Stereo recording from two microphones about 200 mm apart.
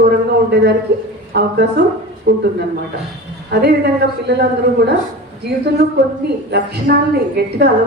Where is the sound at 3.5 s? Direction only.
55° right (ahead or behind).